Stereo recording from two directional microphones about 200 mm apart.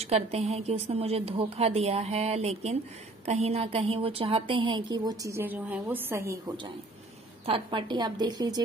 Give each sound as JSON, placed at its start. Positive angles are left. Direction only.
{"t": 0.0, "sound": "a woman's voice", "side_deg": -30}
{"t": 7.4, "sound": "a woman's voice", "side_deg": -25}